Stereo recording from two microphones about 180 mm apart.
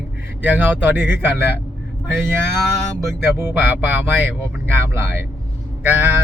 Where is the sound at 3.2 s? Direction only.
15° right (ahead or behind).